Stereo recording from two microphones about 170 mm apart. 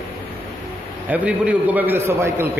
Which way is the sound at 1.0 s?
10° right (ahead or behind).